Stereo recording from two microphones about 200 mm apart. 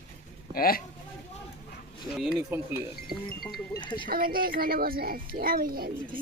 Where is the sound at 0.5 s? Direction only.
50° left (ahead or behind).